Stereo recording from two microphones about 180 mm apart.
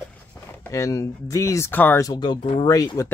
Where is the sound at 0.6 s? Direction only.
15° left (ahead or behind).